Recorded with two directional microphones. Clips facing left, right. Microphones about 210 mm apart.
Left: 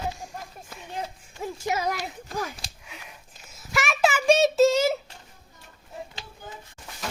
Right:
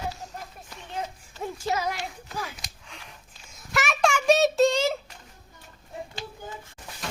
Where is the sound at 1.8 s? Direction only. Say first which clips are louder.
Left 2 dB; 40° left (ahead or behind).